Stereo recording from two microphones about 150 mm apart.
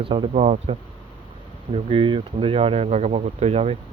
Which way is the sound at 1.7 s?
35° right (ahead or behind).